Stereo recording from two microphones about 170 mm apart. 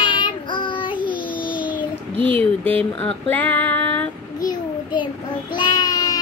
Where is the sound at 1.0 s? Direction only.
25° left (ahead or behind).